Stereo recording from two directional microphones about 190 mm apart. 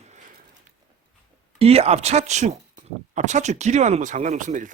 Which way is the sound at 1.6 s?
30° right (ahead or behind).